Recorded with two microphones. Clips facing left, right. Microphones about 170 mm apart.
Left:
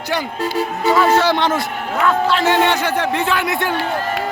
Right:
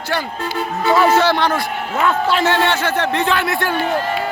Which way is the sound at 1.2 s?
20° left (ahead or behind).